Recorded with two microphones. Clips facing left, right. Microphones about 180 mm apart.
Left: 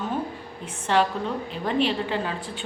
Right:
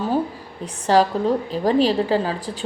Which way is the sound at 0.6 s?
35° right (ahead or behind).